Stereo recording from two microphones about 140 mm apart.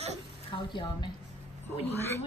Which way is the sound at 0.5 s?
35° left (ahead or behind).